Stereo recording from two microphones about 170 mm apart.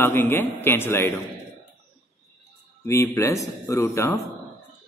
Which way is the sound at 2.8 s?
15° left (ahead or behind).